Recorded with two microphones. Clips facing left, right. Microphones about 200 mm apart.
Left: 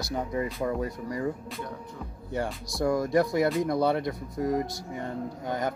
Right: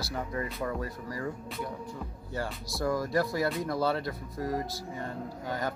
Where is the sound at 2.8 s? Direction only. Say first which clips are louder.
Left 4 dB; 20° left (ahead or behind).